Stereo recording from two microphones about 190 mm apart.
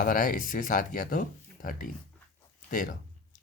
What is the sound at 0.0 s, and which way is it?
Speech, 45° left (ahead or behind).